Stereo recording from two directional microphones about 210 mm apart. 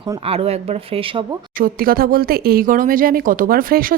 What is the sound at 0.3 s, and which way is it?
Speech, 30° right (ahead or behind).